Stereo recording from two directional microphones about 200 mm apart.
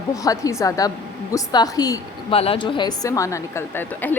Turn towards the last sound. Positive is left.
turn(degrees=10)  # may be behind; listen again after turning